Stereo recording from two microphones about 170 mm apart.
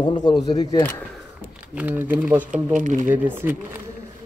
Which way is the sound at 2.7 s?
45° right (ahead or behind).